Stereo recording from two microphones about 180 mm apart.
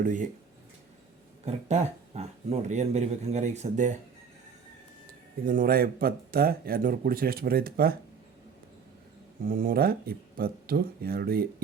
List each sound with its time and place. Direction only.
0.0 s speech: 45° right (ahead or behind)
1.5 s speech: 40° right (ahead or behind)
5.5 s a man's voice: 55° right (ahead or behind)
9.4 s a man's voice: 50° right (ahead or behind)